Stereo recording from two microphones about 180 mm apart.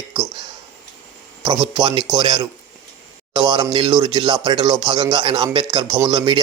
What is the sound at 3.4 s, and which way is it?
Speech, 25° right (ahead or behind).